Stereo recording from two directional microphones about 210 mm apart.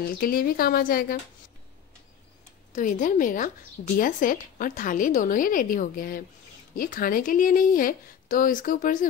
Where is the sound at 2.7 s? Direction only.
40° left (ahead or behind).